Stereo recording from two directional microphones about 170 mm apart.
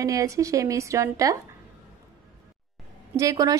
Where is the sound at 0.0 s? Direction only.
20° right (ahead or behind).